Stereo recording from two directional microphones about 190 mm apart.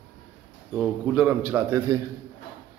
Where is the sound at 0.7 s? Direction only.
5° right (ahead or behind).